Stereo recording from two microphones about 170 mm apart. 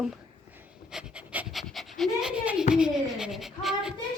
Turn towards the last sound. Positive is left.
turn(degrees=0)  # may be behind; listen again after turning